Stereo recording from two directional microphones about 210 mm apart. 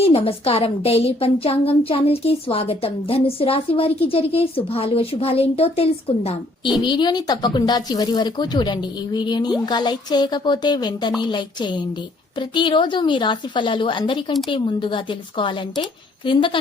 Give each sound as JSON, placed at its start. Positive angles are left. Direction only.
{"t": 0.0, "sound": "a woman's voice", "side_deg": 25}